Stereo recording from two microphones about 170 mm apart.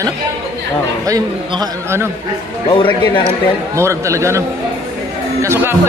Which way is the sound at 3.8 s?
15° right (ahead or behind).